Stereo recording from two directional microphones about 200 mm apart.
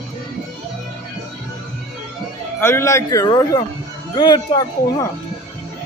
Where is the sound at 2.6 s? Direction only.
15° left (ahead or behind).